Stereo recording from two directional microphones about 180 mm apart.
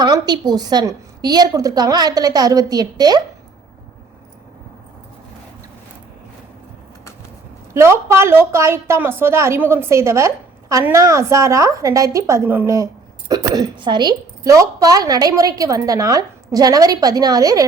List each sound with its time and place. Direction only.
0.0 s a woman's voice: 20° right (ahead or behind)
7.7 s a woman's voice: 15° right (ahead or behind)